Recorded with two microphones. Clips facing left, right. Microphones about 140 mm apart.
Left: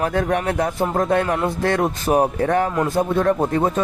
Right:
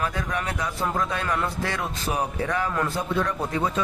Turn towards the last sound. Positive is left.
turn(degrees=50)  # may be behind; listen again after turning